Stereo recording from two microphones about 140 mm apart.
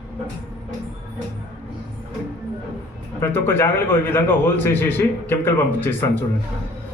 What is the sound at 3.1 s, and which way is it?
A man's voice, 15° left (ahead or behind).